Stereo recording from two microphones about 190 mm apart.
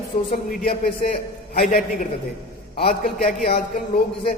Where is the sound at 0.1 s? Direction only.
45° left (ahead or behind).